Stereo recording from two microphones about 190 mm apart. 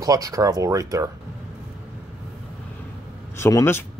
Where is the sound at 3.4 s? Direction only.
15° left (ahead or behind).